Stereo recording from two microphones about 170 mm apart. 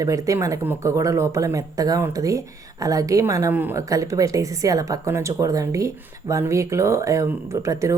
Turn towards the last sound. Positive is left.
turn(degrees=-20)  # may be behind; listen again after turning